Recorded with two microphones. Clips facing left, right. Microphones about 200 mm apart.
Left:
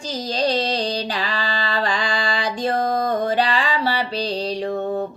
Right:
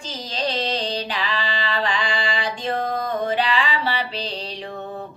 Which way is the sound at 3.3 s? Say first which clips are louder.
Left 2 dB; 40° left (ahead or behind).